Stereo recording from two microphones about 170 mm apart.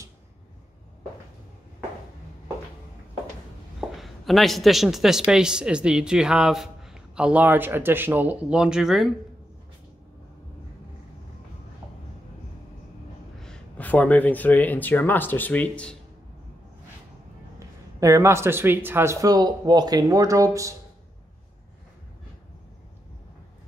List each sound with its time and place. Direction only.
3.9 s speech: centre (ahead or behind)
13.4 s speech: 5° left (ahead or behind)
17.6 s speech: 15° right (ahead or behind)